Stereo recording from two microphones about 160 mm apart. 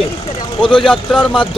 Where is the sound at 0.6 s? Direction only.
5° left (ahead or behind).